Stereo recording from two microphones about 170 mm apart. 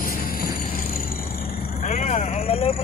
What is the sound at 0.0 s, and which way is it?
Vehicle, 60° left (ahead or behind).